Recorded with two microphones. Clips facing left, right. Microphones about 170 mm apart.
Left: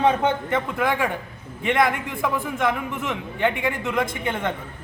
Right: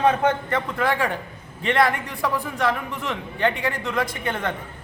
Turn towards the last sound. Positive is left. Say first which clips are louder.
# left 1 dB
turn(degrees=15)  # may be behind; listen again after turning